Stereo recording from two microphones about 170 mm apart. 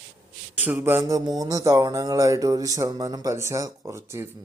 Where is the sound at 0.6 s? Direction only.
10° right (ahead or behind).